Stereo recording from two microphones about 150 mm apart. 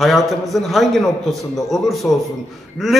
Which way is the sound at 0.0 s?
Centre (ahead or behind).